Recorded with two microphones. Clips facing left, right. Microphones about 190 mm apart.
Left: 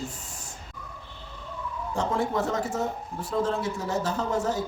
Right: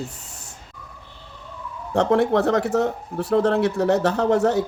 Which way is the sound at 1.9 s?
70° right (ahead or behind).